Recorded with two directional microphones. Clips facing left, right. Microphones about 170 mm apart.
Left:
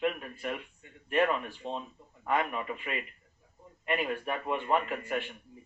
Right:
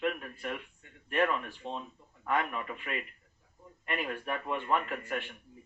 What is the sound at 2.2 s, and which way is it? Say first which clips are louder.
A man's voice: left 2 dB; 20° left (ahead or behind).